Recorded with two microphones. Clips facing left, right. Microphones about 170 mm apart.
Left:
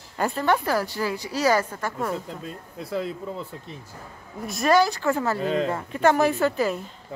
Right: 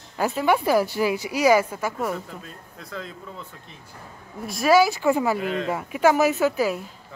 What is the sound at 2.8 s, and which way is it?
Speech, 30° left (ahead or behind).